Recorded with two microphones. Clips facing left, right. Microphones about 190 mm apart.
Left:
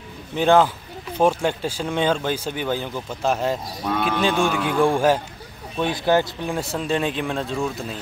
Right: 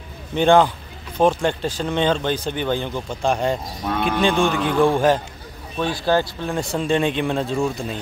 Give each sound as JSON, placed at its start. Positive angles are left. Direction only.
{"t": 0.4, "sound": "speech", "side_deg": 5}
{"t": 6.5, "sound": "speech", "side_deg": 5}